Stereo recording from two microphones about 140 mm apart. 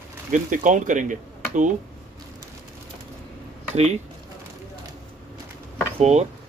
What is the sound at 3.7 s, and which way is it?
Speech, 50° right (ahead or behind).